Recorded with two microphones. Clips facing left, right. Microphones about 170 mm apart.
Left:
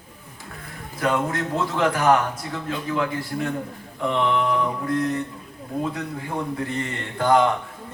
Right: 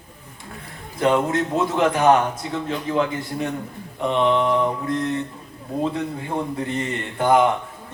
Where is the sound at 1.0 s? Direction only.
20° right (ahead or behind).